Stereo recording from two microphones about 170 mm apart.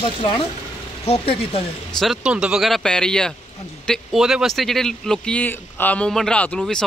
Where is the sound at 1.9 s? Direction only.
5° right (ahead or behind).